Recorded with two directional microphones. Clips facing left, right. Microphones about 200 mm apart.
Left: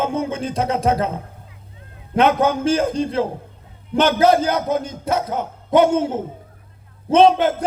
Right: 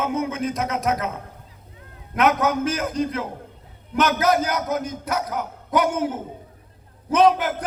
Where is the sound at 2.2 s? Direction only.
30° left (ahead or behind).